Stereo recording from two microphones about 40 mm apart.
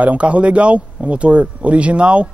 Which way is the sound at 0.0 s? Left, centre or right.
Right.